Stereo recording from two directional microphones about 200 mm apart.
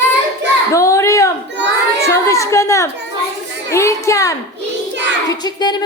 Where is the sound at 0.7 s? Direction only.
15° left (ahead or behind).